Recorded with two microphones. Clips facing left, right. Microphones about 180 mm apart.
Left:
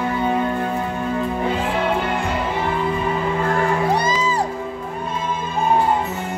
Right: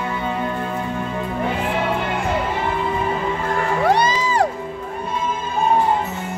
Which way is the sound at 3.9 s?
70° right (ahead or behind).